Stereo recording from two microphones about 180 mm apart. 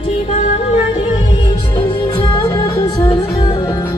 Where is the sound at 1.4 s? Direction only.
30° left (ahead or behind).